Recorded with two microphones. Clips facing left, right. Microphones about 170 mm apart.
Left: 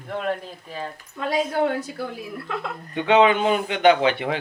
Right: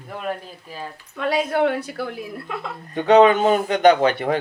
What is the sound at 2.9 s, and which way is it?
A man's voice, 40° right (ahead or behind).